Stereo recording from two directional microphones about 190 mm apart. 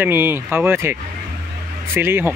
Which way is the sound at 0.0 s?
10° right (ahead or behind).